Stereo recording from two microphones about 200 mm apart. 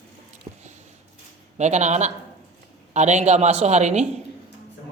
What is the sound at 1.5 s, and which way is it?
Speech, 35° right (ahead or behind).